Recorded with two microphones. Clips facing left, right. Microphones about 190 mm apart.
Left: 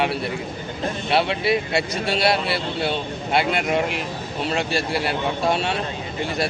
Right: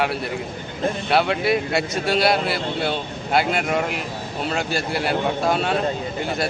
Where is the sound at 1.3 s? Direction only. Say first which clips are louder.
Right 1 dB; 55° right (ahead or behind).